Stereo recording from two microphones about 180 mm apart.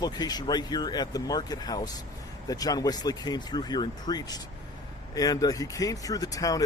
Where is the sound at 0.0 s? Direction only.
20° left (ahead or behind).